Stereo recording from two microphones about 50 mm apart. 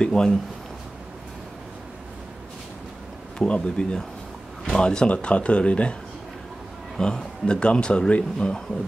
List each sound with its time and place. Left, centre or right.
0.0 s speech: centre
3.3 s speech: left
7.0 s speech: centre